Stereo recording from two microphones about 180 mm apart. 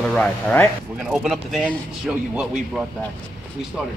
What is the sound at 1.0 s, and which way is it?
Speech, centre (ahead or behind).